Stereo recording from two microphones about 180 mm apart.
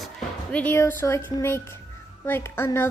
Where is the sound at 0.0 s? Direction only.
5° left (ahead or behind).